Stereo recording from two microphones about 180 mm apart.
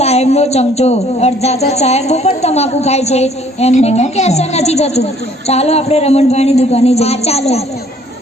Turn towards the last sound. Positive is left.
turn(degrees=35)  # may be behind; listen again after turning